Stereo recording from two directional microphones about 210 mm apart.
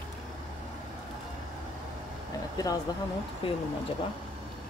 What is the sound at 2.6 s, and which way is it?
Speech, 15° left (ahead or behind).